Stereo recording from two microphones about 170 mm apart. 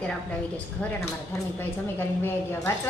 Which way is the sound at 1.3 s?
15° left (ahead or behind).